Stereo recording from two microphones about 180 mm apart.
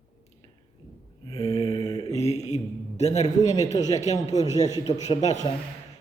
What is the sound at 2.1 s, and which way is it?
A man's voice, 35° left (ahead or behind).